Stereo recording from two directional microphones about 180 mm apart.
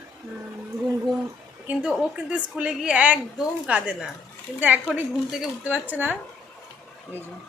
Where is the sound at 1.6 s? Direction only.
5° right (ahead or behind).